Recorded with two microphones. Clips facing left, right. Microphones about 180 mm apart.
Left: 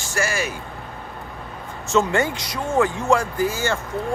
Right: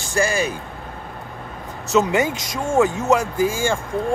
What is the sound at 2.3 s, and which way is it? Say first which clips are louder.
Speech: right 2 dB; 25° right (ahead or behind).